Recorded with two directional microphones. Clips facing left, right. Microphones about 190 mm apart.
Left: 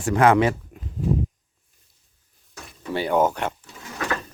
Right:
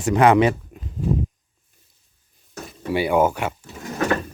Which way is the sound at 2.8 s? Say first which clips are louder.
Right 2 dB; 10° right (ahead or behind).